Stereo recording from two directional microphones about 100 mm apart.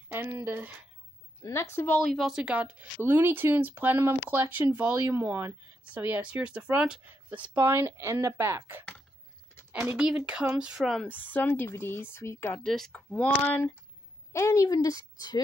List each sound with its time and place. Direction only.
0.1 s speech: 20° right (ahead or behind)
1.4 s speech: 25° left (ahead or behind)
2.0 s speech: 5° right (ahead or behind)
10.8 s speech: centre (ahead or behind)
11.1 s speech: 15° left (ahead or behind)
12.5 s speech: 5° left (ahead or behind)
13.1 s speech: 15° left (ahead or behind)
14.3 s a woman's voice: 30° left (ahead or behind)